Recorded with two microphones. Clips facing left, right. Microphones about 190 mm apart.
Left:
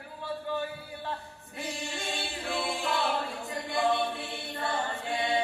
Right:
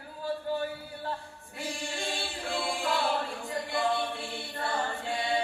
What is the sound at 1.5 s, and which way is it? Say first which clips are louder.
Choir: even; 20° left (ahead or behind).